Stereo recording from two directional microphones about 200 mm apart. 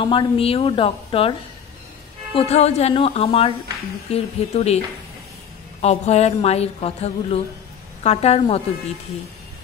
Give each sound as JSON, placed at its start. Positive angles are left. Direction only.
{"t": 0.0, "sound": "a woman's voice", "side_deg": 25}
{"t": 2.3, "sound": "a woman's voice", "side_deg": 30}
{"t": 5.8, "sound": "a woman's voice", "side_deg": 35}